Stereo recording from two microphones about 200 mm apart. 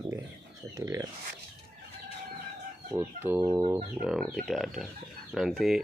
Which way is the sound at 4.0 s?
5° right (ahead or behind).